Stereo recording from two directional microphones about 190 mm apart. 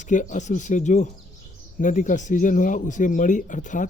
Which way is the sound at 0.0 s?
40° left (ahead or behind).